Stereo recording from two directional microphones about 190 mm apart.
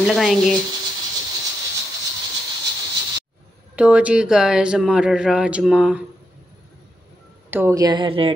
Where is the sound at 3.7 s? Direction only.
5° right (ahead or behind).